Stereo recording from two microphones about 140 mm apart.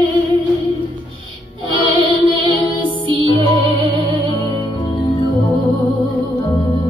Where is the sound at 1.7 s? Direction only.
35° right (ahead or behind).